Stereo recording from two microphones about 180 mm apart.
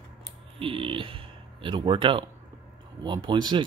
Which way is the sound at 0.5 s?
30° right (ahead or behind).